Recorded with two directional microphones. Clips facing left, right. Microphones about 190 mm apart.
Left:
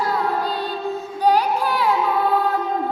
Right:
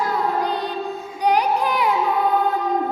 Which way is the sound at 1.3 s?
15° right (ahead or behind).